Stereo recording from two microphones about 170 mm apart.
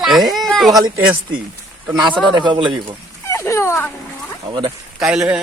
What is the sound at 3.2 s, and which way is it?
Dog, 15° left (ahead or behind).